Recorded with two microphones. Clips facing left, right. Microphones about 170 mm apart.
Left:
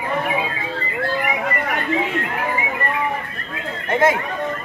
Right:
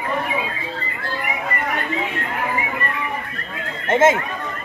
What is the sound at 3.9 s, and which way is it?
Chatter, 20° right (ahead or behind).